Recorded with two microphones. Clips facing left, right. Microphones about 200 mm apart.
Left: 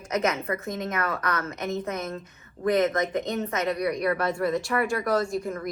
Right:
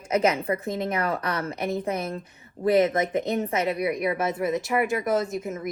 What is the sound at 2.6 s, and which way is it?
A woman's voice, 15° right (ahead or behind).